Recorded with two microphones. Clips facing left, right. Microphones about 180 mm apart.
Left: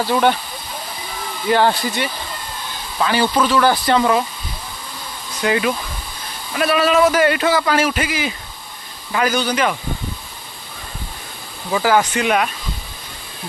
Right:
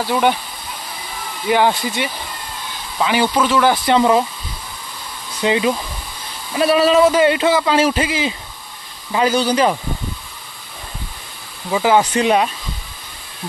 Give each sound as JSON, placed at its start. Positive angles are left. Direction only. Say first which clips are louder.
{"t": 0.1, "sound": "speech", "louder": "even", "side_deg": -5}
{"t": 1.5, "sound": "speech", "louder": "even", "side_deg": -15}
{"t": 5.4, "sound": "a man's voice", "louder": "right 2 dB", "side_deg": -20}
{"t": 11.7, "sound": "a man's voice", "louder": "right 2 dB", "side_deg": -20}